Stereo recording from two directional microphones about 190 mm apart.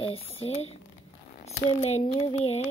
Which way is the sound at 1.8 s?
35° left (ahead or behind).